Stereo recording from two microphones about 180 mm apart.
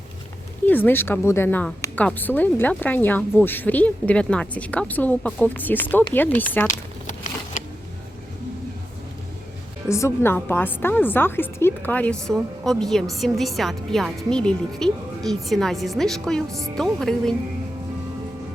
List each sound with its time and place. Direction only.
0.6 s speech: 10° left (ahead or behind)
6.7 s a sound: 45° left (ahead or behind)
9.9 s a woman's voice: 15° left (ahead or behind)
16.5 s speech: 20° right (ahead or behind)
16.7 s a woman's voice: centre (ahead or behind)